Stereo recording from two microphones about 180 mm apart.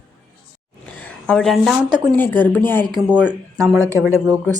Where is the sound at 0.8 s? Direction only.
5° left (ahead or behind).